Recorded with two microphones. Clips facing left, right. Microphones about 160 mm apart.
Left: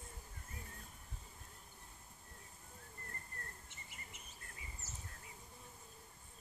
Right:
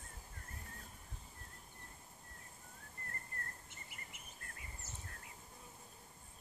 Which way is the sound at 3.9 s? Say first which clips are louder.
Even; 55° right (ahead or behind).